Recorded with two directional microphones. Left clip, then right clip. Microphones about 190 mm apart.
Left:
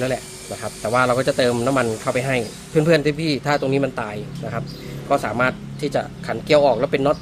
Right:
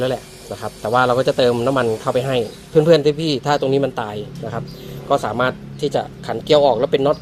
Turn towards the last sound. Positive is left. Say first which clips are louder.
# right 2 dB
turn(degrees=-10)  # may be behind; listen again after turning